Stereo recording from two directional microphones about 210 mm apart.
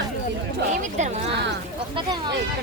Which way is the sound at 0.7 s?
35° right (ahead or behind).